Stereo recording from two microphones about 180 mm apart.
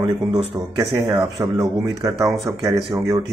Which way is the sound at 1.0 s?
15° right (ahead or behind).